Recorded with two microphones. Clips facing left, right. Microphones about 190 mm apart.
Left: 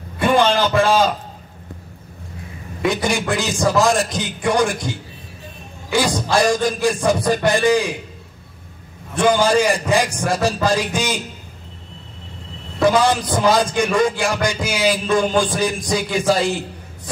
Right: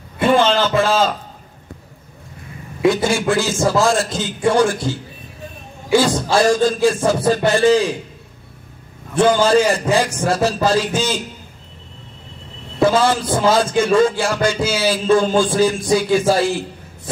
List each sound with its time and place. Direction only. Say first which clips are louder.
0.4 s music: even; 15° left (ahead or behind)
2.9 s music: right 3 dB; 15° left (ahead or behind)
5.9 s music: right 3 dB; 15° left (ahead or behind)
9.1 s music: right 2 dB; 15° left (ahead or behind)
12.8 s music: right 1 dB; 15° left (ahead or behind)